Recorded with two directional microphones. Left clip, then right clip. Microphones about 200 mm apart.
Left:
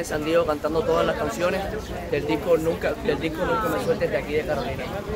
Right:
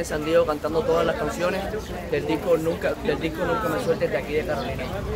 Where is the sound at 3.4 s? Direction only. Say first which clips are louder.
Left 1 dB; 20° left (ahead or behind).